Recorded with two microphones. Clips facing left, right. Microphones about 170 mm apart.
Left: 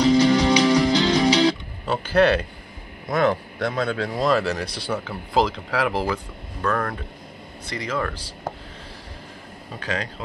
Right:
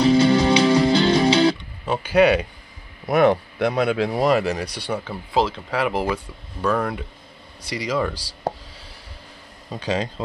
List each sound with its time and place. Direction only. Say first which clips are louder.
0.0 s music: right 1 dB; 30° right (ahead or behind)
1.9 s speech: right 2 dB; 10° right (ahead or behind)
3.5 s speech: right 4 dB; 5° right (ahead or behind)
4.1 s speech: even; 20° right (ahead or behind)
4.4 s speech: right 1 dB; 10° right (ahead or behind)
8.1 s speech: right 4 dB; 35° right (ahead or behind)